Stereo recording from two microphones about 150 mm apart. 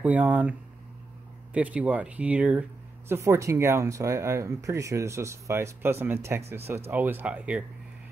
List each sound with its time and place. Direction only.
0.0 s speech: 10° right (ahead or behind)